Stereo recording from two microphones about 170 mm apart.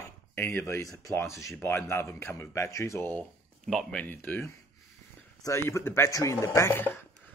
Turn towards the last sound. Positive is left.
turn(degrees=15)  # may be behind; listen again after turning